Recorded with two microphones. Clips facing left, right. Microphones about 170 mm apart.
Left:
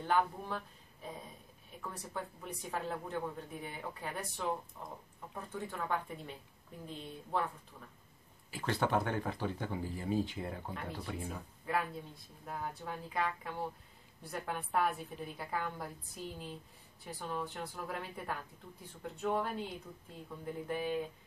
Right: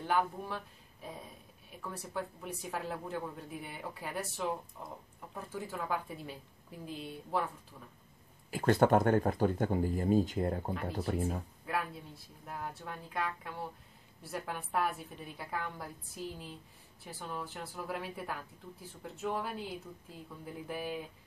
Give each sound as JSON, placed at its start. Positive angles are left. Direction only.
{"t": 0.0, "sound": "speech", "side_deg": -5}
{"t": 1.8, "sound": "speech", "side_deg": 0}
{"t": 8.5, "sound": "speech", "side_deg": -50}
{"t": 11.6, "sound": "a woman's voice", "side_deg": 0}